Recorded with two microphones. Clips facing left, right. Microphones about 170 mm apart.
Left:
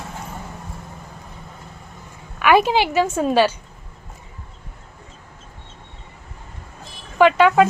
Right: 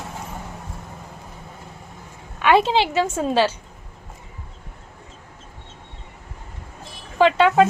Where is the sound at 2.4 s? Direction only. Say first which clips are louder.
Left 1 dB; 25° right (ahead or behind).